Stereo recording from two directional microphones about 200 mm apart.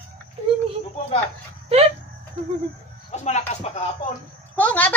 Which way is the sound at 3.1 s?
35° left (ahead or behind).